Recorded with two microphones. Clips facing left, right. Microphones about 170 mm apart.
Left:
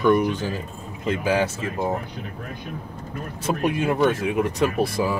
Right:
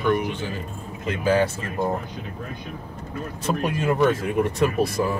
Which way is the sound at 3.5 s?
10° left (ahead or behind).